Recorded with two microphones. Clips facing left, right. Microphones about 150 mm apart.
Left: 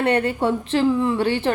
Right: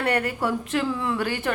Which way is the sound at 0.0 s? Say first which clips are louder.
Left 5 dB; 25° left (ahead or behind).